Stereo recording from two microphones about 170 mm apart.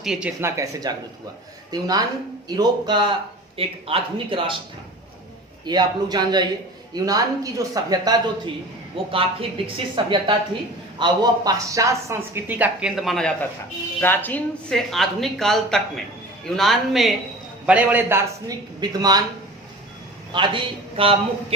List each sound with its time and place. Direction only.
0.0 s speech: 5° right (ahead or behind)
0.5 s a woman's voice: 20° right (ahead or behind)
5.6 s speech: 25° right (ahead or behind)
9.1 s a woman's voice: 30° right (ahead or behind); by 13.3 s centre (ahead or behind)
14.0 s speech: 10° left (ahead or behind); by 19.2 s 20° right (ahead or behind)
20.3 s a woman's voice: 30° right (ahead or behind)